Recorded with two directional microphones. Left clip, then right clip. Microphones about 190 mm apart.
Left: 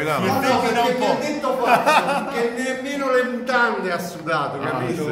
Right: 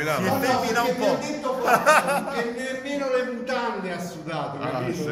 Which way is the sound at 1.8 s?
5° right (ahead or behind).